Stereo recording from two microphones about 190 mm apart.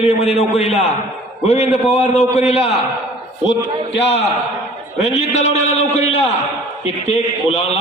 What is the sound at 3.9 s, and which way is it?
A man's voice, 35° left (ahead or behind).